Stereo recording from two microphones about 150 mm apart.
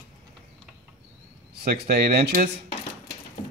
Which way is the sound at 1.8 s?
90° right.